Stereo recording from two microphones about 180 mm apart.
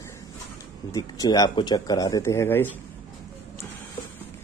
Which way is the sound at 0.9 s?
20° left (ahead or behind).